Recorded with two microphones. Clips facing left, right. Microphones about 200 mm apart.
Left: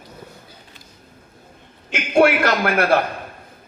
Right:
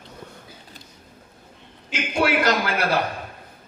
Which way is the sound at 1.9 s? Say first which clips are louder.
Left 7 dB; 55° left (ahead or behind).